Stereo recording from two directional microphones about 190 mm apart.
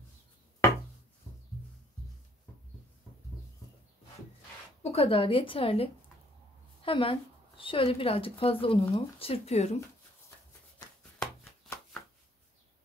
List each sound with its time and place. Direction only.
4.8 s speech: 30° left (ahead or behind)
11.1 s chopping: 5° left (ahead or behind)